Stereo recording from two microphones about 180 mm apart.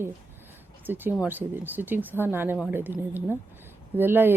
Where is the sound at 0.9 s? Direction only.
10° right (ahead or behind).